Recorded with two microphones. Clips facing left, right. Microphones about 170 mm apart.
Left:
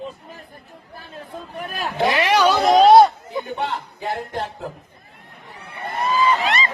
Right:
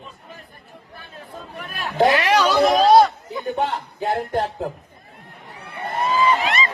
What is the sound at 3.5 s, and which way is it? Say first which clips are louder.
Speech: right 3 dB; 45° right (ahead or behind).